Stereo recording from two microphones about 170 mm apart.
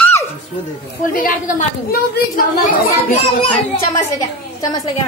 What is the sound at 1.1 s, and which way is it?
A woman's voice, 55° left (ahead or behind).